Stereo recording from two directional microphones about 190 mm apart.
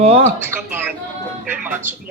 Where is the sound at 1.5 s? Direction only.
10° right (ahead or behind).